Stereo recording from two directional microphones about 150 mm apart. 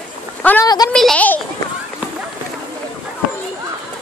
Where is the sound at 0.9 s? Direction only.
5° left (ahead or behind).